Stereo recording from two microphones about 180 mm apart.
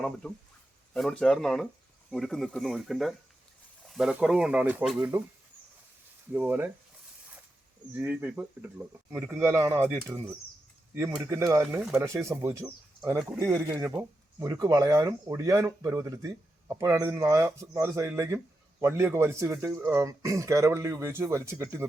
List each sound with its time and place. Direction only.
0.2 s speech: 5° left (ahead or behind)
6.3 s speech: 10° right (ahead or behind)
7.9 s speech: 10° right (ahead or behind)
11.2 s speech: 15° right (ahead or behind)